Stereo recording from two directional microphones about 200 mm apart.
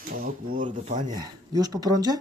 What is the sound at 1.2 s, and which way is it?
Speech, 20° right (ahead or behind).